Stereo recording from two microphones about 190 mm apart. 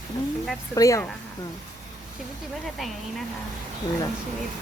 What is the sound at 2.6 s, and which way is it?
Speech, centre (ahead or behind).